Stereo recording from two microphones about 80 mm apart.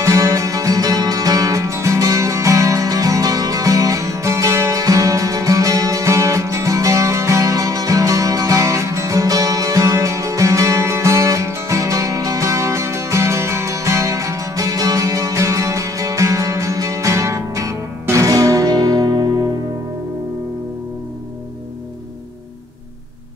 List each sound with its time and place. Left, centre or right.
0.0 s music: right